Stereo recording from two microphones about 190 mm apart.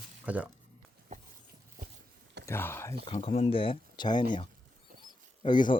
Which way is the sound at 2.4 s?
15° left (ahead or behind).